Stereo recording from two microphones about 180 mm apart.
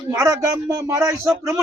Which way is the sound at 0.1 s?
15° right (ahead or behind).